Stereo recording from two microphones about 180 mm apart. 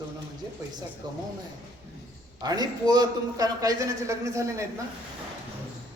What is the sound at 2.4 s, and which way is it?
A man's voice, 20° right (ahead or behind).